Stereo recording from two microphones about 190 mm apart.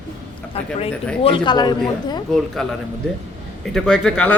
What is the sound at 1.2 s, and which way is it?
A man's voice, 25° left (ahead or behind).